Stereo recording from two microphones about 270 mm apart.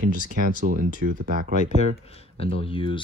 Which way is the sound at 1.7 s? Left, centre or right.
Left.